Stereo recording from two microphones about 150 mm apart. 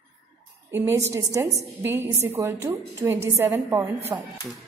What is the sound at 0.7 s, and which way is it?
A woman's voice, 15° right (ahead or behind).